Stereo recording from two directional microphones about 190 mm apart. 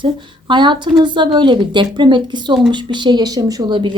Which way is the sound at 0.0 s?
25° right (ahead or behind).